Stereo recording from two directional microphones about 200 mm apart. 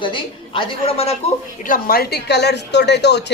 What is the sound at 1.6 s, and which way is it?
A woman's voice, 45° left (ahead or behind).